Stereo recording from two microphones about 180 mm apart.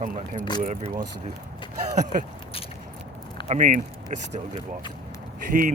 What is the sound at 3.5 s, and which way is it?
Speech, 45° right (ahead or behind).